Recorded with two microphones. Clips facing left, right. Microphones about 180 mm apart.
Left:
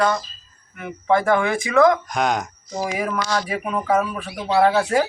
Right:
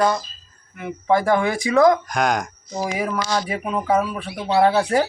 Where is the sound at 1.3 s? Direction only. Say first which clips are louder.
Even; 30° right (ahead or behind).